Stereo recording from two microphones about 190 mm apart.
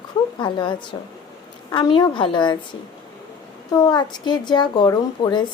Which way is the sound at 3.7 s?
20° left (ahead or behind).